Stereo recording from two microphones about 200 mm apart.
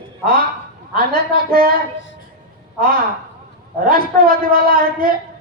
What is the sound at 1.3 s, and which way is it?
Speech, 50° right (ahead or behind).